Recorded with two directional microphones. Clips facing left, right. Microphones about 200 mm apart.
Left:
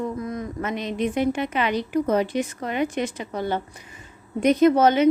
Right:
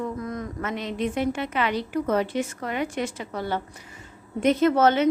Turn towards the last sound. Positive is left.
turn(degrees=15)  # may be behind; listen again after turning